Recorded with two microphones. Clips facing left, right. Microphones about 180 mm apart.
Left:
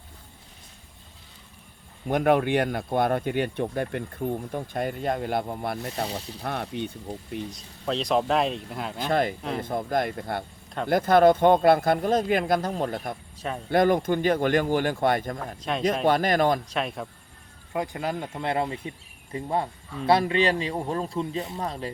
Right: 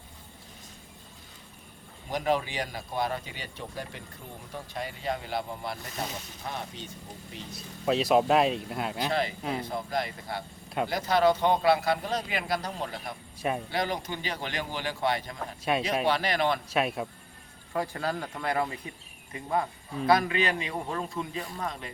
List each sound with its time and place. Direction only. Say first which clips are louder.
2.0 s speech: left 7 dB; 60° left (ahead or behind)
6.0 s a man's voice: left 5 dB; 30° left (ahead or behind)
6.4 s speech: left 8 dB; 60° left (ahead or behind)
7.5 s speech: right 5 dB; 5° right (ahead or behind)
9.0 s a man's voice: left 7 dB; 50° left (ahead or behind)
13.3 s a sound: right 5 dB; 10° right (ahead or behind)
13.7 s a man's voice: left 10 dB; 50° left (ahead or behind)
16.6 s speech: right 1 dB; 5° right (ahead or behind)
17.7 s a man's voice: left 2 dB; 20° left (ahead or behind)